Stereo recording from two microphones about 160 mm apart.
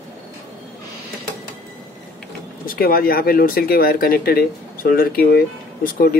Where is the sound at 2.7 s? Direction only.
65° left (ahead or behind).